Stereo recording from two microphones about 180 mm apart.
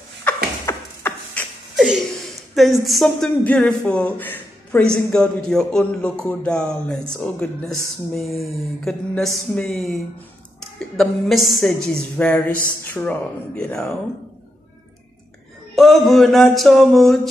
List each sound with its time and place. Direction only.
0.2 s a sound: 10° left (ahead or behind)
2.5 s speech: centre (ahead or behind)
11.0 s speech: centre (ahead or behind)
15.7 s speech: centre (ahead or behind)